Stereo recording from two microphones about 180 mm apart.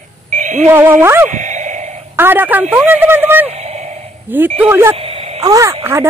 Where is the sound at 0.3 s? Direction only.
40° right (ahead or behind).